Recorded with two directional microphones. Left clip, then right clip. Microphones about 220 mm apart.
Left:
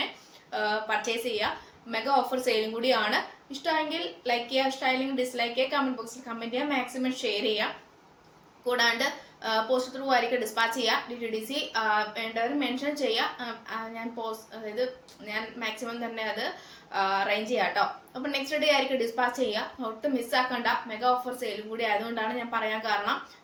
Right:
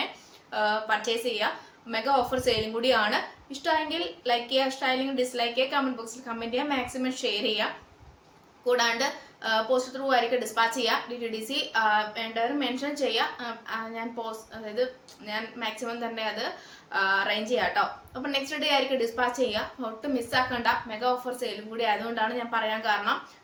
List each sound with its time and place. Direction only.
0.5 s a woman's voice: 15° right (ahead or behind)